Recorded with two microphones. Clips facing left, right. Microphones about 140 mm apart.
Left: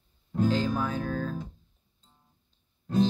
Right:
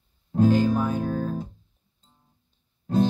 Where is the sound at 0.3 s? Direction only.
50° right (ahead or behind).